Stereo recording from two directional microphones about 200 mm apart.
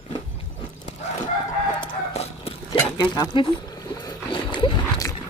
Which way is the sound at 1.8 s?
30° left (ahead or behind).